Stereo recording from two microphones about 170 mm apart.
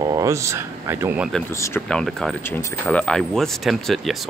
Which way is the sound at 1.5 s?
20° left (ahead or behind).